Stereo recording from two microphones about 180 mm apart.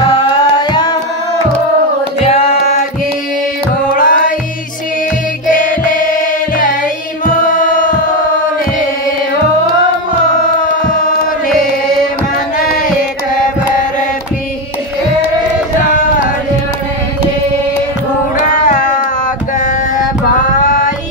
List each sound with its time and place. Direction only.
0.0 s music: 20° left (ahead or behind)
2.1 s music: 35° left (ahead or behind)
3.9 s music: 50° left (ahead or behind)
5.5 s music: 45° left (ahead or behind)
7.4 s music: 45° left (ahead or behind)
18.6 s music: 45° left (ahead or behind)
20.6 s a sound: 45° left (ahead or behind)